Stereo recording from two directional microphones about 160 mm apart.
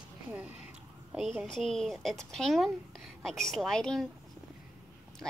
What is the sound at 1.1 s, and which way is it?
Speech, 5° right (ahead or behind).